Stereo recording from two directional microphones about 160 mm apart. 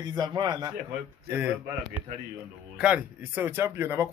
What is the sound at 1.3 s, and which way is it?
Speech, 10° right (ahead or behind).